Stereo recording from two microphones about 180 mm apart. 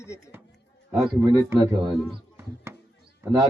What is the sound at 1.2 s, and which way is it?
Speech, 20° right (ahead or behind).